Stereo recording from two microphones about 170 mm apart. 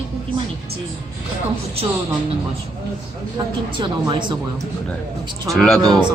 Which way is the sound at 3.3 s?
30° right (ahead or behind).